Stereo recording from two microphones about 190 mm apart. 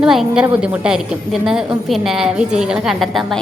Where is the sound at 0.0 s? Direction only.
Centre (ahead or behind).